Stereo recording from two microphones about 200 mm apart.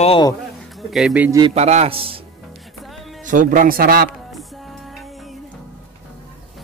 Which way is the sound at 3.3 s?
40° right (ahead or behind).